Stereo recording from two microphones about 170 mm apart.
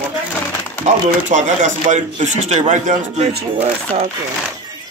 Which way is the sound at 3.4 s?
35° right (ahead or behind).